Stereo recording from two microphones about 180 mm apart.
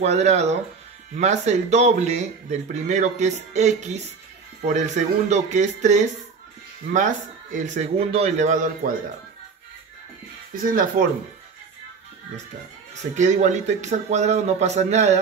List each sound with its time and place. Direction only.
0.0 s speech: 40° right (ahead or behind)
7.5 s speech: 40° right (ahead or behind)
10.5 s speech: 50° right (ahead or behind)
13.1 s speech: 40° right (ahead or behind)